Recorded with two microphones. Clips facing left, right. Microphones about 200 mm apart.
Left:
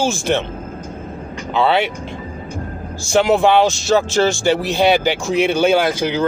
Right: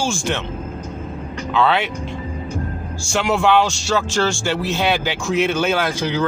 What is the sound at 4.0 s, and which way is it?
Speech, 15° left (ahead or behind).